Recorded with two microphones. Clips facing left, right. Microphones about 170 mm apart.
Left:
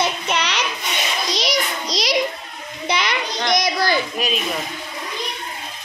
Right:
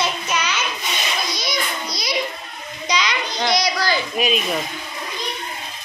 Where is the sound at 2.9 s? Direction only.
55° left (ahead or behind).